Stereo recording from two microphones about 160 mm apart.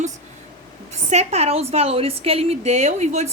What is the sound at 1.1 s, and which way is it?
A woman's voice, 40° right (ahead or behind).